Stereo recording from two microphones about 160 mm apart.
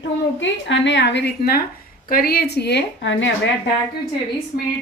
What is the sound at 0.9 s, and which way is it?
Speech, 90° left.